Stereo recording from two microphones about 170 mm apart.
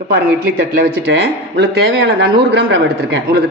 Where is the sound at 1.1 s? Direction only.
75° right (ahead or behind).